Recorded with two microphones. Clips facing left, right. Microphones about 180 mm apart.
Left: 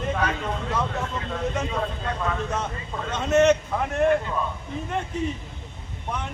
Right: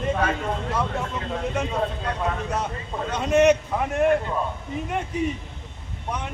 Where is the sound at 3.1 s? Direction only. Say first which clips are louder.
Right 1 dB; 10° right (ahead or behind).